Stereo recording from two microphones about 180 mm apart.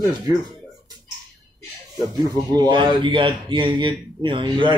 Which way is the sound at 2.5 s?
25° right (ahead or behind).